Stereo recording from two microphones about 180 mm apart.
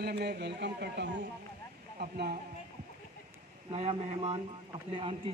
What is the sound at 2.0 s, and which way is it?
Speech, 60° right (ahead or behind).